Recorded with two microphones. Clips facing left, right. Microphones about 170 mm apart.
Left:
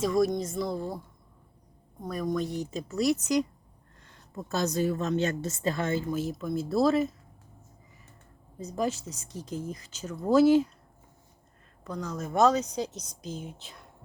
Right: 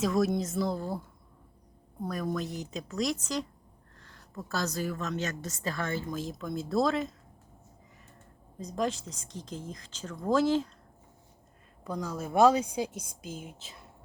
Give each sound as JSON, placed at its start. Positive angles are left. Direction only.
{"t": 0.0, "sound": "a woman's voice", "side_deg": -5}
{"t": 2.0, "sound": "a woman's voice", "side_deg": 0}
{"t": 6.1, "sound": "a woman's voice", "side_deg": 5}
{"t": 8.5, "sound": "speech", "side_deg": 5}
{"t": 11.9, "sound": "speech", "side_deg": -10}